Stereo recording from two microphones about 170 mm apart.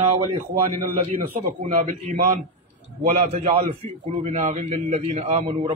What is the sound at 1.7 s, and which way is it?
A man's voice, 50° right (ahead or behind).